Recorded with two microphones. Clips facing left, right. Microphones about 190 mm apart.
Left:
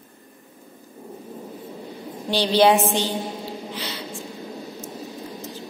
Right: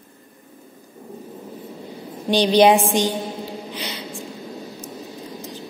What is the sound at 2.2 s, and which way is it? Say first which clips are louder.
Speech: right 3 dB; 15° right (ahead or behind).